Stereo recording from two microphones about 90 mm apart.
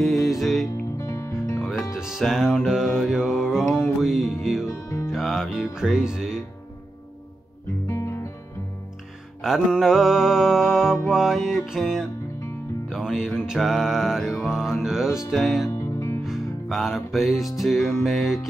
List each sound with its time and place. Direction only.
0.0 s music: centre (ahead or behind)
0.9 s music: 35° left (ahead or behind)
2.0 s music: 5° right (ahead or behind)
4.6 s music: 35° left (ahead or behind)
5.1 s music: centre (ahead or behind)
7.9 s guitar: 30° left (ahead or behind)
9.4 s music: 5° right (ahead or behind)